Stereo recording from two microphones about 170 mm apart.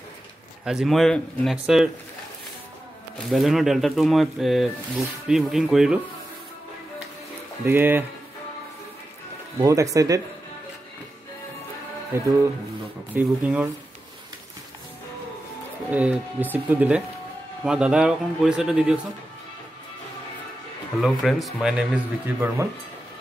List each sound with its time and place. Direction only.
0.7 s speech: centre (ahead or behind)
3.3 s speech: centre (ahead or behind)
7.6 s speech: 10° right (ahead or behind)
9.6 s speech: 20° right (ahead or behind)
12.1 s speech: 15° right (ahead or behind)
15.9 s speech: 10° right (ahead or behind)
21.0 s speech: centre (ahead or behind)